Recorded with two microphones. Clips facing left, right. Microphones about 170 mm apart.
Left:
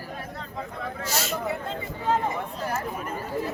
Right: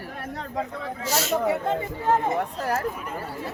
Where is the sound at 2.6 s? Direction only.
80° right.